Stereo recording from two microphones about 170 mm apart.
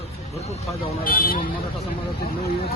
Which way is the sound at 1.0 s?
55° left (ahead or behind).